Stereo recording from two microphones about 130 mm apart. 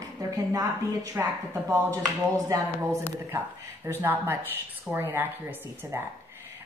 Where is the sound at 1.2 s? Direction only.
15° right (ahead or behind).